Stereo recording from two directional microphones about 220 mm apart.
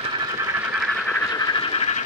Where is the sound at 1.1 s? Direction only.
15° left (ahead or behind).